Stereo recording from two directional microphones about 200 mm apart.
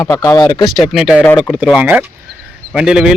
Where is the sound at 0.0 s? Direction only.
15° left (ahead or behind).